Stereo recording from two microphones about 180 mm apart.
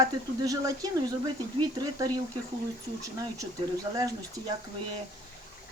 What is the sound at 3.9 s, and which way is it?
Speech, 20° right (ahead or behind).